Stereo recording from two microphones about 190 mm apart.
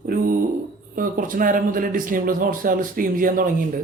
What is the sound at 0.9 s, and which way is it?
Speech, 45° right (ahead or behind).